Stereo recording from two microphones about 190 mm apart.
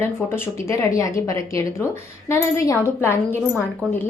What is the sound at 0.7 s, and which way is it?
A woman's voice, 15° left (ahead or behind).